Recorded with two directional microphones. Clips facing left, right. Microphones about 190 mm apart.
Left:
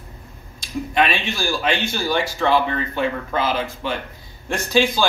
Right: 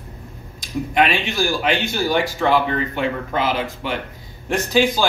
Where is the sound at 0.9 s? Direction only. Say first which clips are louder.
Right 2 dB; 15° right (ahead or behind).